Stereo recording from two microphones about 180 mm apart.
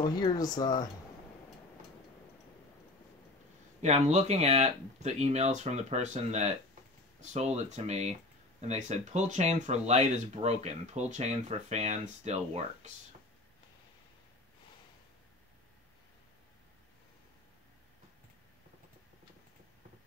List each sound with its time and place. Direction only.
0.2 s speech: 20° left (ahead or behind)
3.8 s speech: 40° right (ahead or behind)